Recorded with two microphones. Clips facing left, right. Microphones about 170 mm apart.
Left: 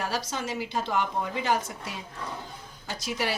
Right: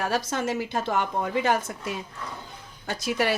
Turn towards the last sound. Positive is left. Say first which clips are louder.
# right 5 dB
turn(degrees=-55)  # may be behind; listen again after turning